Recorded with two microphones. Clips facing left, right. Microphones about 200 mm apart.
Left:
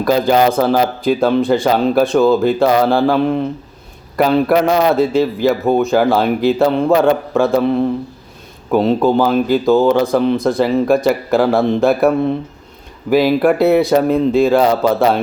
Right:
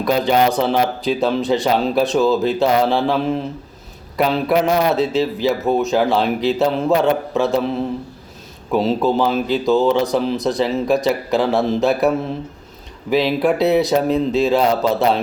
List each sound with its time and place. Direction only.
0.0 s speech: centre (ahead or behind)
8.7 s speech: centre (ahead or behind)